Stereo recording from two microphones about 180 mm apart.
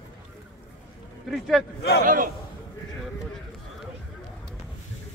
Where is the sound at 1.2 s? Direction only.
Centre (ahead or behind).